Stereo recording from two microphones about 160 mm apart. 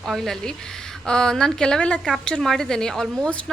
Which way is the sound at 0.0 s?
Centre (ahead or behind).